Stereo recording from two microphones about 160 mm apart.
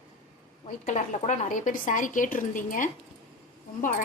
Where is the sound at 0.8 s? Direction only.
50° left (ahead or behind).